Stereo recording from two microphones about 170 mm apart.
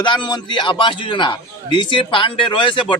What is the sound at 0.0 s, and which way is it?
A man's voice, 30° left (ahead or behind).